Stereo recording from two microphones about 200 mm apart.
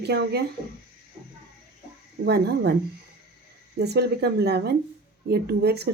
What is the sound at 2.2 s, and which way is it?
Speech, 55° right (ahead or behind).